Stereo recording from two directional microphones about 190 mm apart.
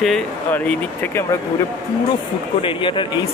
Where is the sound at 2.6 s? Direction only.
25° left (ahead or behind).